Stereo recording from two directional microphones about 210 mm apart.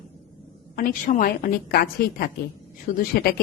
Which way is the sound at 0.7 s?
40° left (ahead or behind).